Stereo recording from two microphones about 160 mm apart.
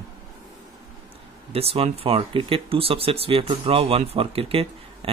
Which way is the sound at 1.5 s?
40° right (ahead or behind).